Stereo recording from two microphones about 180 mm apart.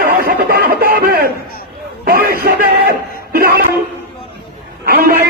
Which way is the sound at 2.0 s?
55° right (ahead or behind).